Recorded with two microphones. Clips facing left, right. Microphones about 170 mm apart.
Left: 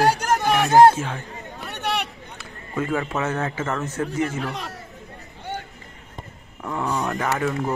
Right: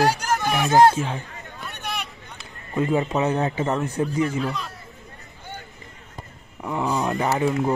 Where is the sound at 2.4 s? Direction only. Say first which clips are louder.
Right 3 dB; 20° right (ahead or behind).